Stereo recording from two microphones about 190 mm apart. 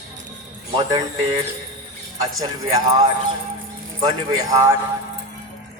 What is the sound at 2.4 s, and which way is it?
Speech, 20° right (ahead or behind).